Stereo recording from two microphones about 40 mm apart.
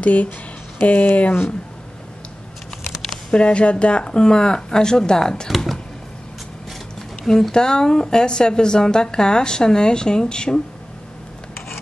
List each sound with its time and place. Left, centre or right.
0.0 s speech: left
3.3 s speech: left
7.0 s speech: centre